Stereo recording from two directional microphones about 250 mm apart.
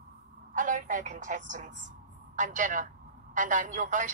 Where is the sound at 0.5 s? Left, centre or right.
Right.